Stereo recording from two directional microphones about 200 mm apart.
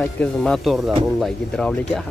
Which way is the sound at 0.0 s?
5° left (ahead or behind).